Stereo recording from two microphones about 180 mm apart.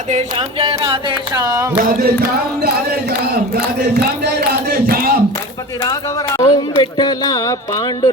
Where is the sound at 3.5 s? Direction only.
65° right (ahead or behind).